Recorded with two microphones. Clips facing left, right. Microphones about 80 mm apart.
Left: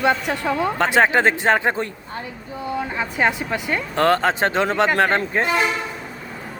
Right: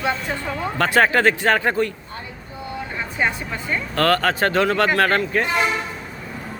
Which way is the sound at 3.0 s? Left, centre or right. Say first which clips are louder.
Left 2 dB; left.